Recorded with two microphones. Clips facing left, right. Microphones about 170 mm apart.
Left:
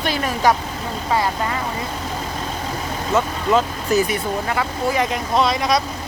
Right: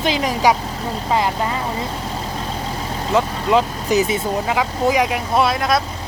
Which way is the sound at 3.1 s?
15° right (ahead or behind).